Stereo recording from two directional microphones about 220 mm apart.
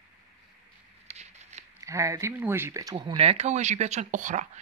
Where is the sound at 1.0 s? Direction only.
30° right (ahead or behind).